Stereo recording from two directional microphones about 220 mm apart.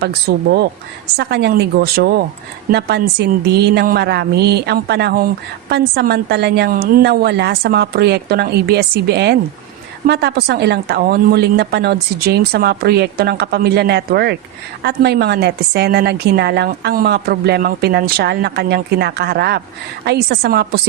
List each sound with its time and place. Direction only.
0.0 s a woman's voice: 45° right (ahead or behind)